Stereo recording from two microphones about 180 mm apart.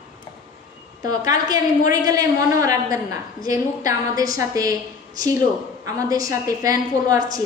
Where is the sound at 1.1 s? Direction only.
20° right (ahead or behind).